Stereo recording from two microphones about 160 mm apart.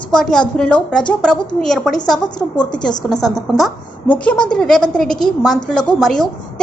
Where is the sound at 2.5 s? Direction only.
25° left (ahead or behind).